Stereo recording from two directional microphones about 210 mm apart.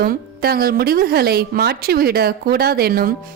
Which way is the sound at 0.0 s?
45° right (ahead or behind).